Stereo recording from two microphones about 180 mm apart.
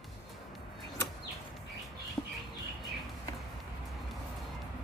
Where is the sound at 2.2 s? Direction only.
10° left (ahead or behind).